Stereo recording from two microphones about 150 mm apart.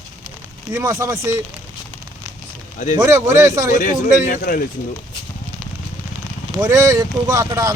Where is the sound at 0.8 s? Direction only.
25° right (ahead or behind).